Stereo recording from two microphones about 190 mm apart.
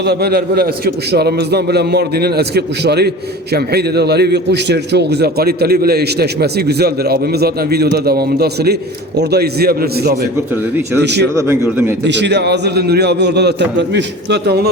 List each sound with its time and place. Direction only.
0.0 s a man's voice: 60° right (ahead or behind)